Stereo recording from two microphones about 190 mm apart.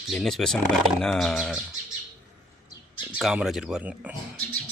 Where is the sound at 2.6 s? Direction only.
25° left (ahead or behind).